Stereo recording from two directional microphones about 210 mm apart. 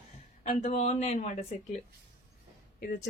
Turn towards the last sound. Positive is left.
turn(degrees=40)  # may be behind; listen again after turning